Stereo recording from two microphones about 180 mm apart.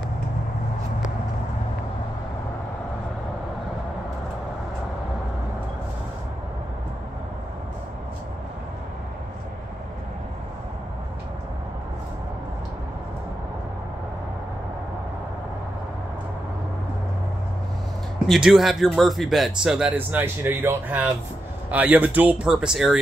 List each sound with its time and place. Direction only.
18.3 s speech: centre (ahead or behind)